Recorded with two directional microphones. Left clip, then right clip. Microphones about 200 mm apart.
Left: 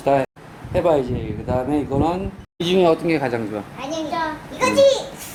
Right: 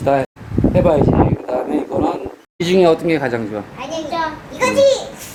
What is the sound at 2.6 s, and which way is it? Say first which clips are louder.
A child's voice: right 4 dB; 15° right (ahead or behind).